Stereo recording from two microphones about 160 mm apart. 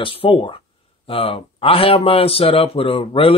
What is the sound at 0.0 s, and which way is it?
Speech, 35° left (ahead or behind).